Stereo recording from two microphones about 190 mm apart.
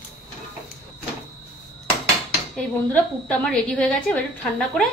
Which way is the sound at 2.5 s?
5° left (ahead or behind).